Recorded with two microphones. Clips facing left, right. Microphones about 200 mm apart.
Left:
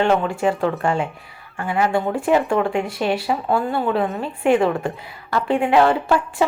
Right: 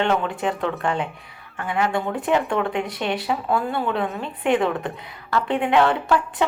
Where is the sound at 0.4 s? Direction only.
5° left (ahead or behind).